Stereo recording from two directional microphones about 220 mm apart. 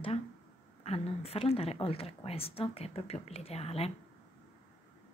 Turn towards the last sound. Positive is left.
turn(degrees=25)  # may be behind; listen again after turning